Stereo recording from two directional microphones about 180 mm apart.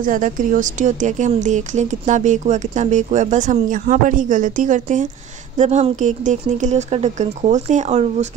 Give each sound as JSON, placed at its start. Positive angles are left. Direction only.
{"t": 0.0, "sound": "speech", "side_deg": -50}